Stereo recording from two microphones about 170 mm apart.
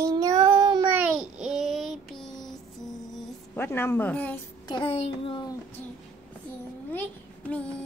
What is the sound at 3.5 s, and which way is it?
Speech, 15° left (ahead or behind).